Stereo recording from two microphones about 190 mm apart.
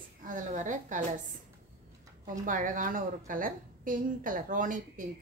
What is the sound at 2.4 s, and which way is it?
A woman's voice, 45° right (ahead or behind).